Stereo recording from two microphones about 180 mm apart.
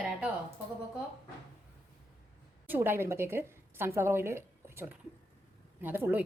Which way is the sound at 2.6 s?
10° right (ahead or behind).